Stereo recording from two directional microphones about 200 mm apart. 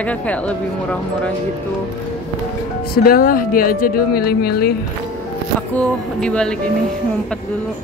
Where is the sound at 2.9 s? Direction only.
50° left (ahead or behind).